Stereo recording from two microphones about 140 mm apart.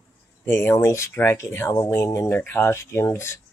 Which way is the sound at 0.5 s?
15° left (ahead or behind).